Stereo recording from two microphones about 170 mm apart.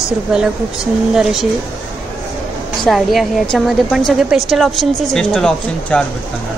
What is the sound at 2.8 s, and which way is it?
A woman's voice, centre (ahead or behind).